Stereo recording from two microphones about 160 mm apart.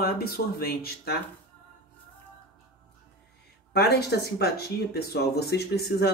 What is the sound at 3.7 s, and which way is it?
Speech, 90° left.